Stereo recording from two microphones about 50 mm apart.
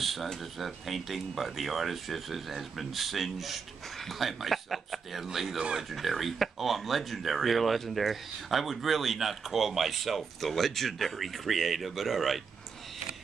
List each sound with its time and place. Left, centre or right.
0.0 s speech: centre
5.6 s speech: centre
5.9 s speech: centre